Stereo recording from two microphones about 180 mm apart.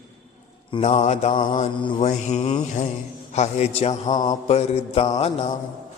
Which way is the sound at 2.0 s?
40° left (ahead or behind).